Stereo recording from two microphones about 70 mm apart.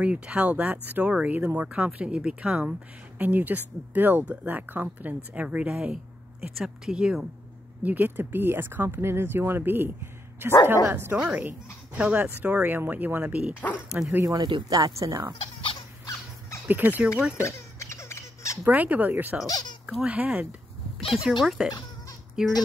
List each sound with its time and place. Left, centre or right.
0.0 s speech: centre
3.2 s speech: right
7.8 s speech: right
14.3 s speech: right
16.6 s speech: right
17.4 s squeak: left
18.6 s speech: right
19.4 s speech: left
20.1 s speech: right
21.1 s speech: centre